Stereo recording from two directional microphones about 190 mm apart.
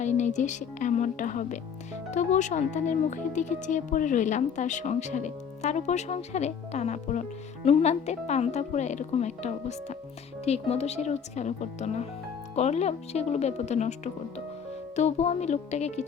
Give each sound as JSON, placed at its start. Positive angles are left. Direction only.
{"t": 0.0, "sound": "speech", "side_deg": 40}